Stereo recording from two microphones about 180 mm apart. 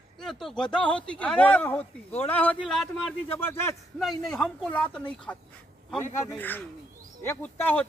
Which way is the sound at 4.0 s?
Centre (ahead or behind).